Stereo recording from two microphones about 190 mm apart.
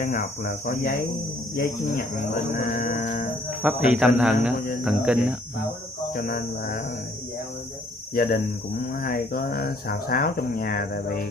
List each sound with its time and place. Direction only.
0.0 s speech: 50° left (ahead or behind)
2.5 s sheep: 50° left (ahead or behind)
3.4 s speech: 5° right (ahead or behind)
6.1 s speech: 50° left (ahead or behind)
8.1 s speech: 50° left (ahead or behind)